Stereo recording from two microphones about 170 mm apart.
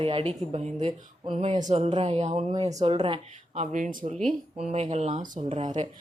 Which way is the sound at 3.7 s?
50° right (ahead or behind).